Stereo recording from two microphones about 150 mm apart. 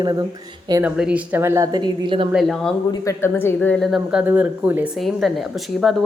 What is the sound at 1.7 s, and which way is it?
Speech, 30° right (ahead or behind).